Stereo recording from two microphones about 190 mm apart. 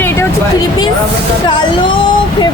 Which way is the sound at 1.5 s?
25° left (ahead or behind).